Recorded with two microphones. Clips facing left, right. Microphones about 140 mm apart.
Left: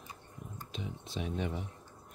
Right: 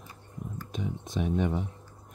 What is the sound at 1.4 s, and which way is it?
Speech, 55° right (ahead or behind).